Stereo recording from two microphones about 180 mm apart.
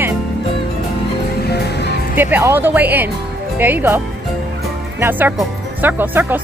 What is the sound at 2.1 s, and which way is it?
Speech, 10° right (ahead or behind).